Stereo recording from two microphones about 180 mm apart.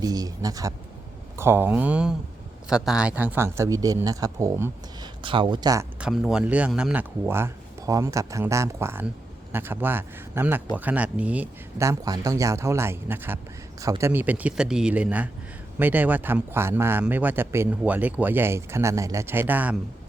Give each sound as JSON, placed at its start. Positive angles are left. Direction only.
{"t": 0.0, "sound": "speech", "side_deg": -20}
{"t": 5.2, "sound": "speech", "side_deg": -25}
{"t": 6.0, "sound": "speech", "side_deg": -5}